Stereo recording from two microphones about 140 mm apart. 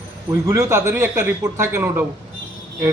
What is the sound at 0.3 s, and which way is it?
A man's voice, 20° right (ahead or behind).